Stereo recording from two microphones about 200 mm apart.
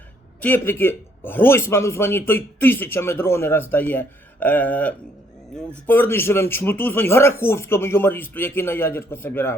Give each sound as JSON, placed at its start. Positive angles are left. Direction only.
{"t": 0.4, "sound": "a man's voice", "side_deg": 10}